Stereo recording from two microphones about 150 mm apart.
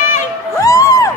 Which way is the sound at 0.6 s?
20° left (ahead or behind).